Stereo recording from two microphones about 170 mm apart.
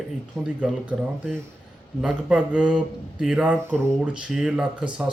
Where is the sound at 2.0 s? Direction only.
5° right (ahead or behind).